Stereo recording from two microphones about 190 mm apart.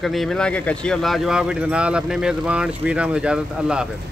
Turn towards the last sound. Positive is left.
turn(degrees=-5)  # may be behind; listen again after turning